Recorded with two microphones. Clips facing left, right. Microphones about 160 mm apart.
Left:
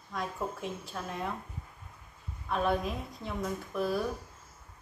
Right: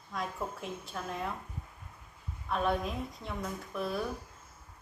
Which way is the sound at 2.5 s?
Centre (ahead or behind).